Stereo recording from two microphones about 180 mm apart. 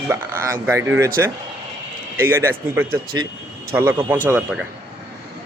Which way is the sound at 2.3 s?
15° right (ahead or behind).